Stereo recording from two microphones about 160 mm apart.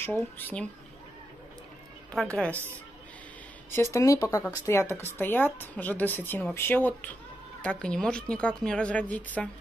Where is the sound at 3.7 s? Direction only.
20° left (ahead or behind).